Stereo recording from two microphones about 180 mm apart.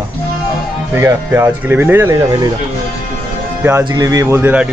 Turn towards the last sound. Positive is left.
turn(degrees=-10)  # may be behind; listen again after turning